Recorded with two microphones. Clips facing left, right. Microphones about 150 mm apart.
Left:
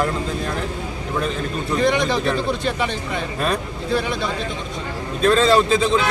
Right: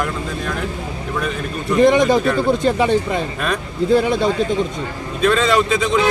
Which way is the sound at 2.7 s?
35° right (ahead or behind).